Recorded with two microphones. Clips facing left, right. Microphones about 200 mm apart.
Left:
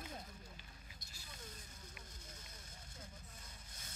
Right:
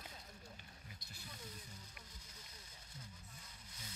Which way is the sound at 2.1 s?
45° left (ahead or behind).